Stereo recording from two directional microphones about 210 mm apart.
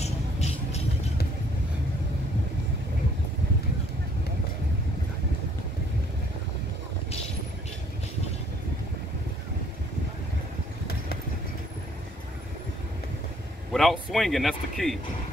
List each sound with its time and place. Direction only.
0.0 s vehicle: 30° left (ahead or behind)
13.7 s speech: centre (ahead or behind)